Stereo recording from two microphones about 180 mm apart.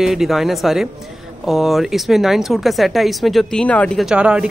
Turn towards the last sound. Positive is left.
turn(degrees=-5)  # may be behind; listen again after turning